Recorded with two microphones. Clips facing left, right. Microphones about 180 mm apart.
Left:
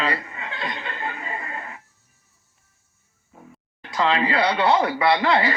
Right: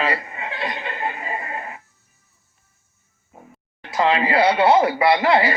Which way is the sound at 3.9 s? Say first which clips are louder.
Right 3 dB; 20° right (ahead or behind).